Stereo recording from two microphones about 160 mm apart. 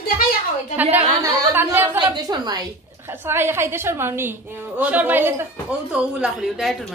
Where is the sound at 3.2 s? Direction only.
15° right (ahead or behind).